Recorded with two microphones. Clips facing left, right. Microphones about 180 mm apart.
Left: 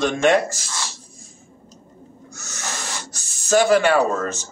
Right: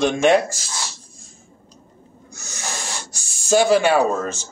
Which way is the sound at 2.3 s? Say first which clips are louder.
Right 1 dB; 15° right (ahead or behind).